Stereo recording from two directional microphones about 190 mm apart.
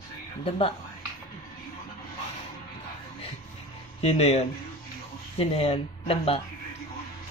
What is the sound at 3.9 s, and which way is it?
Speech, 35° left (ahead or behind).